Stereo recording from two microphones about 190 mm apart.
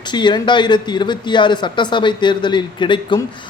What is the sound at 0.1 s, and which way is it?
Speech, 25° left (ahead or behind).